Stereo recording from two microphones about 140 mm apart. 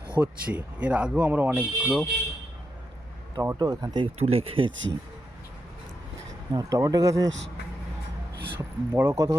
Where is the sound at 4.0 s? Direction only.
45° right (ahead or behind).